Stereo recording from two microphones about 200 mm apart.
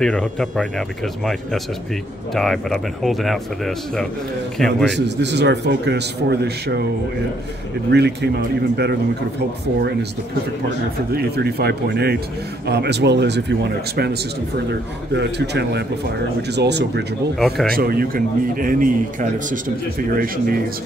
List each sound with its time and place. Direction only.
0.0 s a man's voice: 5° left (ahead or behind)
4.8 s a man's voice: 60° right (ahead or behind)
7.9 s a man's voice: 55° right (ahead or behind)
11.1 s a man's voice: 50° right (ahead or behind)
17.4 s a man's voice: centre (ahead or behind)
17.7 s a man's voice: 50° right (ahead or behind)